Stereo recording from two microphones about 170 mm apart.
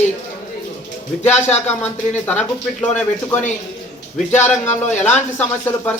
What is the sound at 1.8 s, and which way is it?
Speech, 10° left (ahead or behind).